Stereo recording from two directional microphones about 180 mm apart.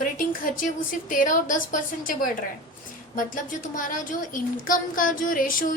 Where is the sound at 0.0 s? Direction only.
50° left (ahead or behind).